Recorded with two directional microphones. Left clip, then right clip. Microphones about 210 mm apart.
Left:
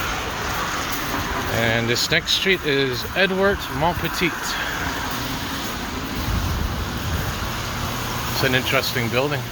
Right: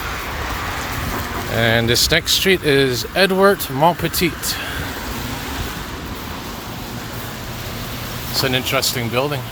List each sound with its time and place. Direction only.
1.5 s speech: 35° right (ahead or behind)
8.4 s speech: 15° right (ahead or behind)